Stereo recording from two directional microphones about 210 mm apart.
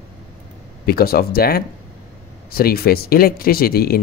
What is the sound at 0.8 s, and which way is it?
Speech, 45° left (ahead or behind).